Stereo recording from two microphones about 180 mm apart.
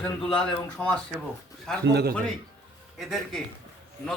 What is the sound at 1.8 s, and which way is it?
Speech, 65° right (ahead or behind).